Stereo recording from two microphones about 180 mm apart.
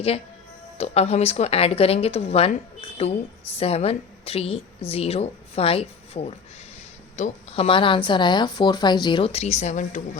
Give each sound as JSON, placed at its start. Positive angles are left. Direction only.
{"t": 0.8, "sound": "a woman's voice", "side_deg": 35}
{"t": 3.6, "sound": "a woman's voice", "side_deg": 35}